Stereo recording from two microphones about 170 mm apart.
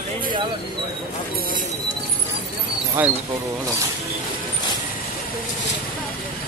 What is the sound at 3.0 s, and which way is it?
Speech, 10° right (ahead or behind).